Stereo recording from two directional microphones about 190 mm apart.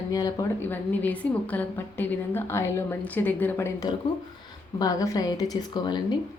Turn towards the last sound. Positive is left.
turn(degrees=25)  # may be behind; listen again after turning